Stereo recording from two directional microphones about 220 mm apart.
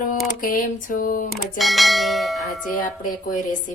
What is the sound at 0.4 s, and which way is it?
Speech, 35° left (ahead or behind).